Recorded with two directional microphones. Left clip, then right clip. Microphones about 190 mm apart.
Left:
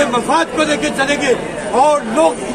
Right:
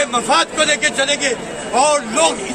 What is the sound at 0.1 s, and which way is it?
A man's voice, 20° right (ahead or behind).